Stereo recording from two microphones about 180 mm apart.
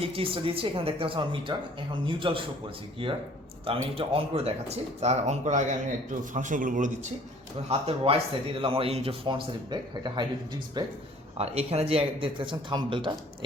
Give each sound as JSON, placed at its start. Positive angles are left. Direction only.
{"t": 0.0, "sound": "speech", "side_deg": -30}
{"t": 3.7, "sound": "speech", "side_deg": -30}
{"t": 7.7, "sound": "speech", "side_deg": -35}
{"t": 11.3, "sound": "speech", "side_deg": -35}